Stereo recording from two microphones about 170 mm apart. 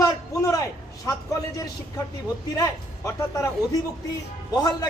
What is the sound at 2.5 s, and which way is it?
Speech, 20° left (ahead or behind).